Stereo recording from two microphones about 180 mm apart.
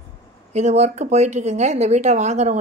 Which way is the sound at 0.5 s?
40° right (ahead or behind).